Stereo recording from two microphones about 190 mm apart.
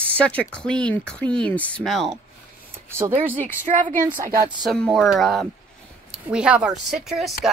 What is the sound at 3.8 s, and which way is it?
Speech, 45° right (ahead or behind).